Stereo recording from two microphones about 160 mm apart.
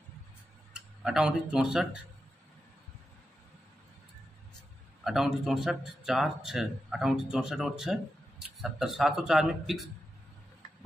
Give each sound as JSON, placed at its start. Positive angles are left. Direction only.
{"t": 0.7, "sound": "speech", "side_deg": -5}
{"t": 5.0, "sound": "speech", "side_deg": 0}